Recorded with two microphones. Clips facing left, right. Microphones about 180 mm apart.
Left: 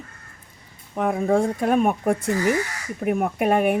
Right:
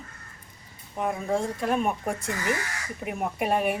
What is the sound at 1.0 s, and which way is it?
Speech, 55° left (ahead or behind).